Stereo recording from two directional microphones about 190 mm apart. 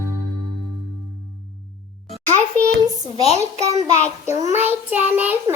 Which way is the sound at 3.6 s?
35° right (ahead or behind).